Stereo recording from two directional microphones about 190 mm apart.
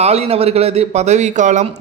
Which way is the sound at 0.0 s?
35° right (ahead or behind).